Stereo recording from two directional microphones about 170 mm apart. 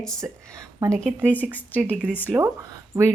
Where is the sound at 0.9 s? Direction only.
5° left (ahead or behind).